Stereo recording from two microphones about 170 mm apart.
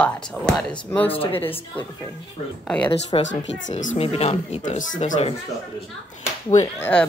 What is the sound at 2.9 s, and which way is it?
Speech, 30° left (ahead or behind).